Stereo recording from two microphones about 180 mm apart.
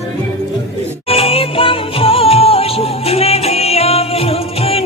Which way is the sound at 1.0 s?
30° left (ahead or behind).